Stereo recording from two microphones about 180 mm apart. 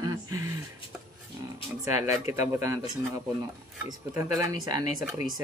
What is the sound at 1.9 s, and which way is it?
Speech, 15° right (ahead or behind).